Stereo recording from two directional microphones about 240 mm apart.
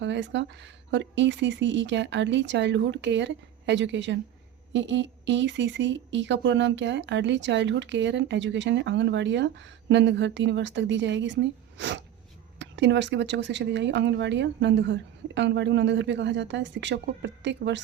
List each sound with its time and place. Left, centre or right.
0.0 s speech: right